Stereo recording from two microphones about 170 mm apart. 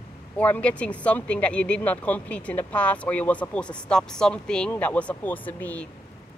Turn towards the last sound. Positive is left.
turn(degrees=10)  # may be behind; listen again after turning